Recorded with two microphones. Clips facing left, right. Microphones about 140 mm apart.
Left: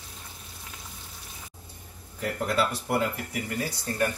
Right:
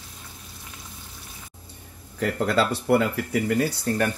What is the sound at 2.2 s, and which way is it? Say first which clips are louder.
Speech: right 4 dB; 85° right.